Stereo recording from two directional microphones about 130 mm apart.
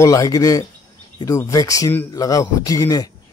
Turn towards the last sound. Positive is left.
turn(degrees=25)  # may be behind; listen again after turning